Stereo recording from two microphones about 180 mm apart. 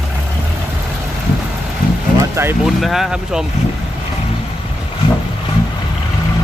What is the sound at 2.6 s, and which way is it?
Speech, centre (ahead or behind).